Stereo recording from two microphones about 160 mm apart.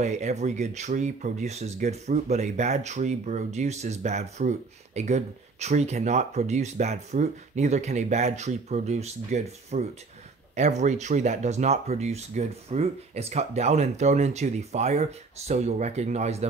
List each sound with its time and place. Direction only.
0.0 s speech: 45° right (ahead or behind)